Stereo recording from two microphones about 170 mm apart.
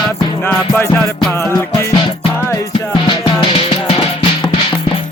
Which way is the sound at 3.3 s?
35° left (ahead or behind).